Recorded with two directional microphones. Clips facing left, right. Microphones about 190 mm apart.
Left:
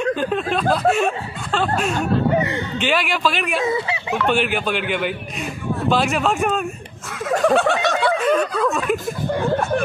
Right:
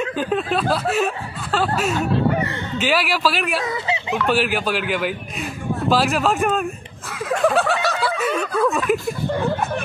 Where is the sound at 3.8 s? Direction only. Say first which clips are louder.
Right 1 dB; 25° right (ahead or behind).